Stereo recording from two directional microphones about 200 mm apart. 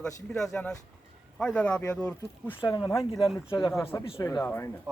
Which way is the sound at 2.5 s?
20° left (ahead or behind).